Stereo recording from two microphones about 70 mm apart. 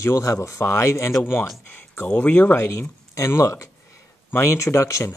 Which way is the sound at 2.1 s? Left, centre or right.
Left.